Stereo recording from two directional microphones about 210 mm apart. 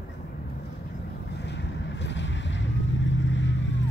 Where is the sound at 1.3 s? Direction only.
55° left (ahead or behind).